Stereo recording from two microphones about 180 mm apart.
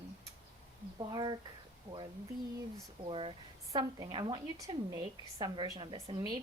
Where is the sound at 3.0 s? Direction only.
30° right (ahead or behind).